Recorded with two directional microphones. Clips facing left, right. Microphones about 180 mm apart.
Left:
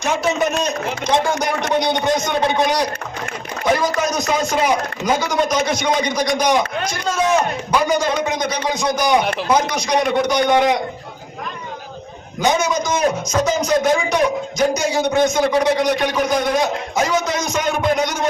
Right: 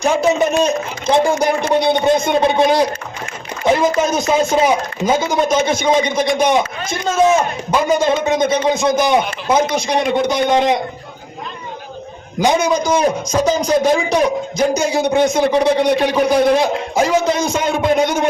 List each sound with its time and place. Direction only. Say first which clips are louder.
0.0 s a man's voice: right 4 dB; 30° right (ahead or behind)
3.9 s a man's voice: right 4 dB; 25° right (ahead or behind)
12.4 s a man's voice: right 3 dB; 35° right (ahead or behind)